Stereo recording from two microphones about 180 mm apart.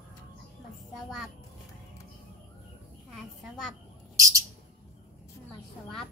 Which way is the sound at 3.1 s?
Centre (ahead or behind).